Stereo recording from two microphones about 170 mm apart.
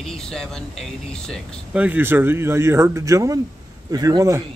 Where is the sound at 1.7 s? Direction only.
10° right (ahead or behind).